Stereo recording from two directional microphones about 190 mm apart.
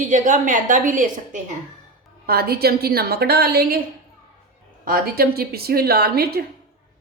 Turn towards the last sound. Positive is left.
turn(degrees=-55)  # may be behind; listen again after turning